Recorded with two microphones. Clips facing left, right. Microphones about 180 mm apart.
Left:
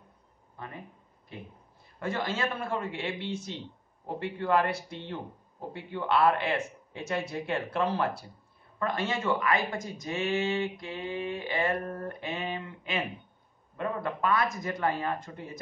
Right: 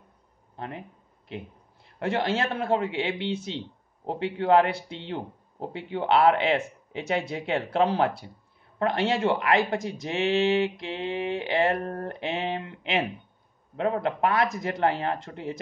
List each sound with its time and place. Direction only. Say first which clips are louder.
0.6 s speech: right 6 dB; 75° right (ahead or behind)
2.0 s speech: right 5 dB; 75° right (ahead or behind)